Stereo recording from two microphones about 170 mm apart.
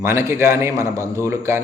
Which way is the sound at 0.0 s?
15° right (ahead or behind).